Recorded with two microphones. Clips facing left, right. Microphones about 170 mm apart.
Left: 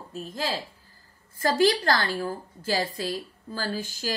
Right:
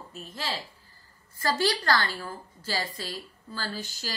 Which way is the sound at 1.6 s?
45° left (ahead or behind).